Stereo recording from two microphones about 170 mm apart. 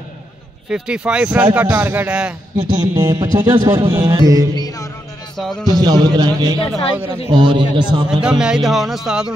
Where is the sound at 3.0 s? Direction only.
25° right (ahead or behind).